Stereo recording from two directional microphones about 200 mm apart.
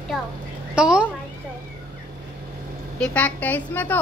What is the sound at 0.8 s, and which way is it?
Speech, 5° right (ahead or behind).